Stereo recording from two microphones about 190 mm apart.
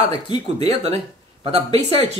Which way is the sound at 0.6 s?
30° right (ahead or behind).